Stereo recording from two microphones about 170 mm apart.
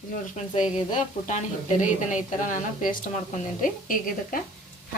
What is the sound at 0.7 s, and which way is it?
A woman's voice, 45° left (ahead or behind).